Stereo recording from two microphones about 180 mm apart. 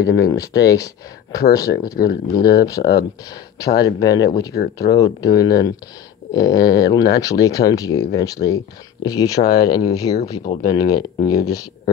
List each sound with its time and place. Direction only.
0.0 s speech: 20° left (ahead or behind)